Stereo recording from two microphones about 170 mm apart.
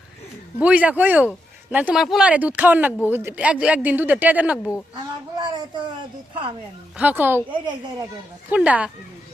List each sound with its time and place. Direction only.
0.6 s speech: 10° right (ahead or behind)
5.4 s a child's voice: 25° right (ahead or behind)
6.9 s speech: 10° right (ahead or behind)
7.6 s a child's voice: 25° right (ahead or behind)
8.4 s speech: 10° right (ahead or behind)